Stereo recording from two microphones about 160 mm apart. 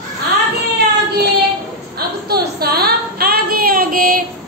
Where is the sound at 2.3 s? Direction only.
75° right (ahead or behind).